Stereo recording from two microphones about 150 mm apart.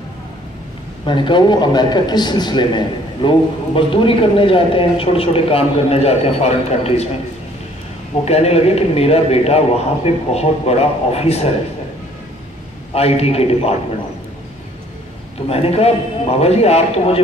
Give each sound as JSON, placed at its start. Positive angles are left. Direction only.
{"t": 1.0, "sound": "a man's voice", "side_deg": 35}
{"t": 8.3, "sound": "a man's voice", "side_deg": 45}
{"t": 12.9, "sound": "a man's voice", "side_deg": 40}
{"t": 15.5, "sound": "a man's voice", "side_deg": 40}